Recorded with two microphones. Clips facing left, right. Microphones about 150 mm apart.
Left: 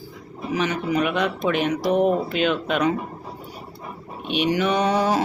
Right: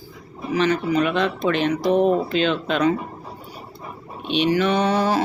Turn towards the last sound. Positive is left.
turn(degrees=15)  # may be behind; listen again after turning